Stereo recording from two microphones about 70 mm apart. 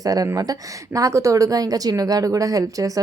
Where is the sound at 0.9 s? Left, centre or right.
Right.